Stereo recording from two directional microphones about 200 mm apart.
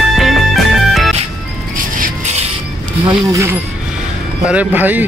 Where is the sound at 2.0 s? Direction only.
35° right (ahead or behind).